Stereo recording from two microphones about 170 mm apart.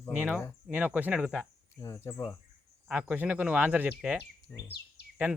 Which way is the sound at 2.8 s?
10° right (ahead or behind).